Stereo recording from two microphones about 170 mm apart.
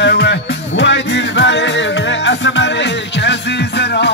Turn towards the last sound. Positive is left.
turn(degrees=80)